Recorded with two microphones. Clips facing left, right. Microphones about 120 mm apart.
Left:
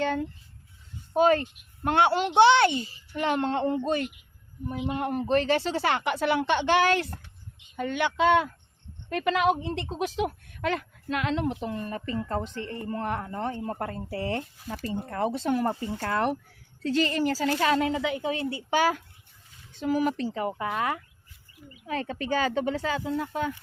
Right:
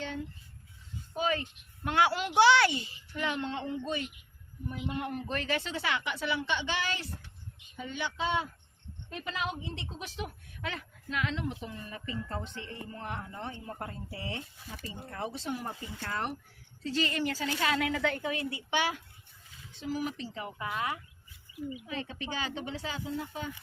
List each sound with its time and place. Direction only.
0.0 s speech: 60° left (ahead or behind)
1.2 s speech: 45° left (ahead or behind)
2.0 s a child's voice: 25° left (ahead or behind)
3.2 s speech: 45° left (ahead or behind)
4.7 s a child's voice: 20° left (ahead or behind)
4.9 s a woman's voice: 35° left (ahead or behind); by 9.8 s 60° left (ahead or behind)
9.8 s a woman's voice: 40° left (ahead or behind)
10.2 s a woman's voice: 70° left (ahead or behind)
10.7 s a woman's voice: 55° left (ahead or behind)
17.0 s a woman's voice: 35° left (ahead or behind)
17.9 s a woman's voice: 10° left (ahead or behind)
18.2 s a woman's voice: 30° left (ahead or behind)
19.7 s speech: 60° left (ahead or behind)